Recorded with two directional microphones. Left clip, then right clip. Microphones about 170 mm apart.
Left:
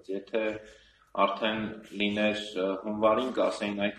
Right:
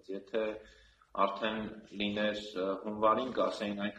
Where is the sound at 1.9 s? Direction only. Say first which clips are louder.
Left 5 dB; 30° right (ahead or behind).